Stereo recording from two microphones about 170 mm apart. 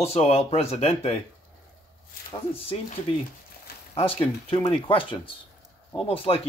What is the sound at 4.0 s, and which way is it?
Speech, 30° left (ahead or behind).